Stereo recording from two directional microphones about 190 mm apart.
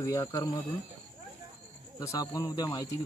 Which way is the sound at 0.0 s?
15° left (ahead or behind).